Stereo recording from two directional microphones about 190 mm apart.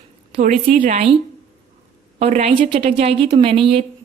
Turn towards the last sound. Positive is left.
turn(degrees=-30)  # may be behind; listen again after turning